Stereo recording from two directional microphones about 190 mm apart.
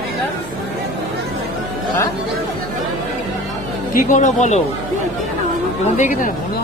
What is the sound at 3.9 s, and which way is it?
Speech, 40° left (ahead or behind).